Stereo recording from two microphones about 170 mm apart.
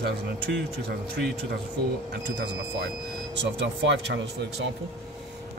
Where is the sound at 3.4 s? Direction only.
90° right.